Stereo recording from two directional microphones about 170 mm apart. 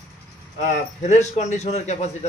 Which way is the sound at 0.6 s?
45° left (ahead or behind).